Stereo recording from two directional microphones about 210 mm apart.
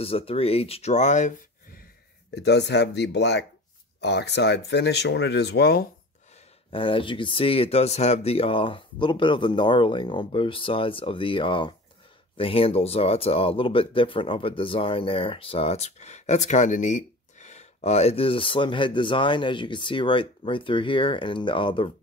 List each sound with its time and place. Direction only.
0.0 s speech: 25° left (ahead or behind)
2.3 s speech: 55° left (ahead or behind)
6.7 s speech: 25° left (ahead or behind)